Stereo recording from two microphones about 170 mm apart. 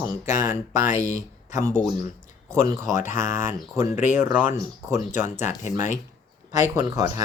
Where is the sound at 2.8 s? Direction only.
45° left (ahead or behind).